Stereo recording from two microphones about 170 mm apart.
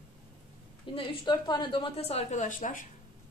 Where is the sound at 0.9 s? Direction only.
30° left (ahead or behind); by 2.7 s 50° left (ahead or behind).